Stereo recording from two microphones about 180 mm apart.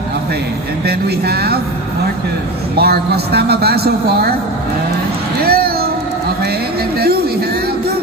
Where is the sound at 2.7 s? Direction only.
60° right (ahead or behind).